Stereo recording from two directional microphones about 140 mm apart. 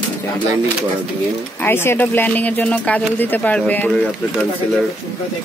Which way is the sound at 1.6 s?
15° left (ahead or behind).